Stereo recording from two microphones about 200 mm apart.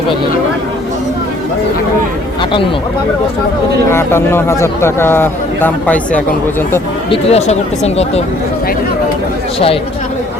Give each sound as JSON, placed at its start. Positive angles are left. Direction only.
{"t": 3.9, "sound": "speech", "side_deg": 10}
{"t": 7.1, "sound": "speech", "side_deg": 30}